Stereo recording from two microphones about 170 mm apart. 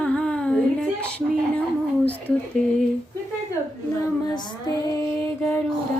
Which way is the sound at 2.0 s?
10° left (ahead or behind).